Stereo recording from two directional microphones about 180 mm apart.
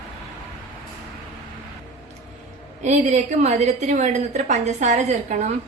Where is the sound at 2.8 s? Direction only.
40° right (ahead or behind).